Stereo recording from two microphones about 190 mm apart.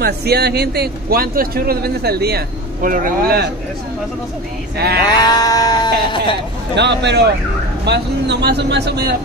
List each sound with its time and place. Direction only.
0.0 s a man's voice: 55° right (ahead or behind)
4.7 s a man's voice: 55° right (ahead or behind)
5.2 s sheep: 20° left (ahead or behind)
6.7 s a man's voice: 65° right (ahead or behind)